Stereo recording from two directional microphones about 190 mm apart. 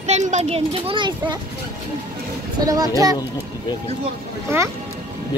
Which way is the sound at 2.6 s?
20° right (ahead or behind).